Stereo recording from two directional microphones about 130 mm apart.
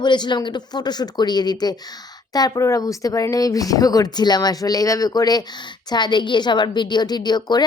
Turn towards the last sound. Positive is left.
turn(degrees=35)  # may be behind; listen again after turning